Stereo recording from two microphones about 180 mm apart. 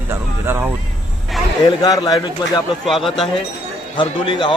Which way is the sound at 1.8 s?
20° left (ahead or behind).